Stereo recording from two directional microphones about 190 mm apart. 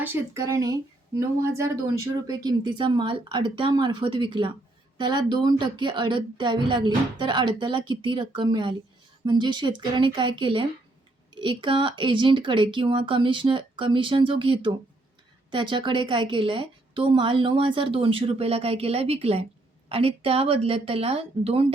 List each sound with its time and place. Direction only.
0.0 s a woman's voice: 15° right (ahead or behind); by 21.7 s 30° right (ahead or behind)